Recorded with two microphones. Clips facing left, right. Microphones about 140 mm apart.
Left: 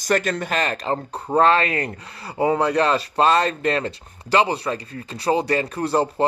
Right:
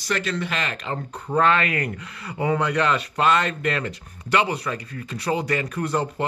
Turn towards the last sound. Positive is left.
turn(degrees=30)  # may be behind; listen again after turning